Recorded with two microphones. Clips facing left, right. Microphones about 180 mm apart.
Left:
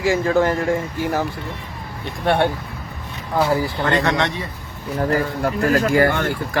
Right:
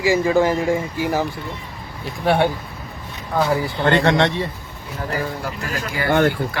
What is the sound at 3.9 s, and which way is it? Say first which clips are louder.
Speech: right 5 dB; 30° right (ahead or behind).